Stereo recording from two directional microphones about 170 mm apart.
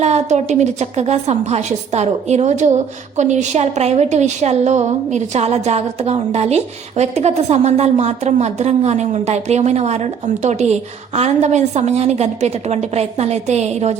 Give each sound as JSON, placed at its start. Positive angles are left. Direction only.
{"t": 0.0, "sound": "a woman's voice", "side_deg": -40}